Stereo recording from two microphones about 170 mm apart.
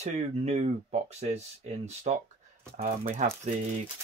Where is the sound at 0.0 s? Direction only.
40° right (ahead or behind).